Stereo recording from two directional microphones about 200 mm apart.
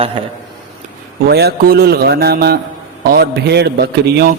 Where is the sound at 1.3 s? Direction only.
55° right (ahead or behind).